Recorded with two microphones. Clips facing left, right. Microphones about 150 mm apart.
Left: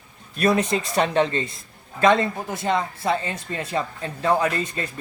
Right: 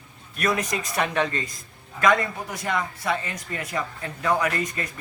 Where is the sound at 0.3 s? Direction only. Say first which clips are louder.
Left 5 dB; 30° left (ahead or behind).